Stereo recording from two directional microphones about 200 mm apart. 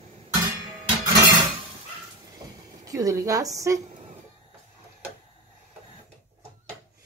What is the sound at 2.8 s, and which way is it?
Speech, 15° right (ahead or behind).